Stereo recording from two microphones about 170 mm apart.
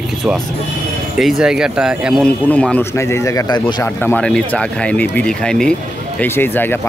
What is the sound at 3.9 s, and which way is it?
A man's voice, 10° left (ahead or behind).